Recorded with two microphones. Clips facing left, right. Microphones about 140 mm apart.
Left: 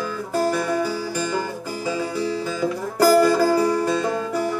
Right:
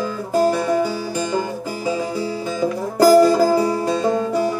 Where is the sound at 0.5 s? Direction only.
20° right (ahead or behind).